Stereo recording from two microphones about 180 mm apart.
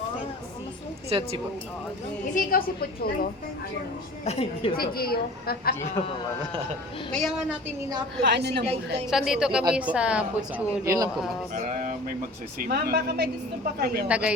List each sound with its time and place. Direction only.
1.1 s speech: 30° right (ahead or behind)
2.3 s a woman's voice: 50° left (ahead or behind)
4.3 s a woman's voice: 35° left (ahead or behind)
4.8 s a woman's voice: 60° left (ahead or behind)
7.1 s a woman's voice: centre (ahead or behind)
8.2 s a woman's voice: 70° right (ahead or behind)
9.0 s a woman's voice: centre (ahead or behind)
10.8 s a man's voice: 20° right (ahead or behind)
11.5 s speech: 45° right (ahead or behind)
14.1 s a woman's voice: 5° right (ahead or behind)